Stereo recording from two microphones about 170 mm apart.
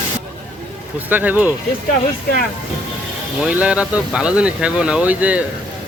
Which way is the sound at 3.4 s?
5° right (ahead or behind).